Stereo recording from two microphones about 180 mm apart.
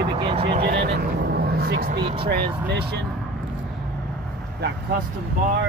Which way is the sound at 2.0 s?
30° right (ahead or behind).